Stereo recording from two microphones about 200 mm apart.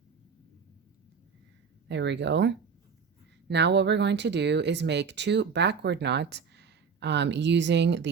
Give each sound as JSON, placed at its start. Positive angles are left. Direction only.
{"t": 1.9, "sound": "speech", "side_deg": -60}